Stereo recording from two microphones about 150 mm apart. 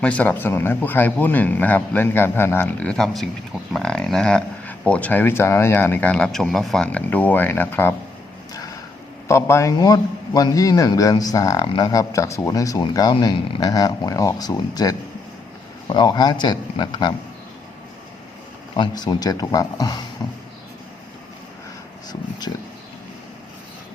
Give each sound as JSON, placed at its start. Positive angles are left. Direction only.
{"t": 0.0, "sound": "speech", "side_deg": 10}
{"t": 9.2, "sound": "speech", "side_deg": 20}
{"t": 18.8, "sound": "speech", "side_deg": 25}
{"t": 22.1, "sound": "speech", "side_deg": 25}